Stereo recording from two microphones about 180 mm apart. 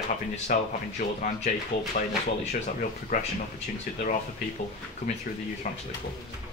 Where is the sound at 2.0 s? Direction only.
55° left (ahead or behind).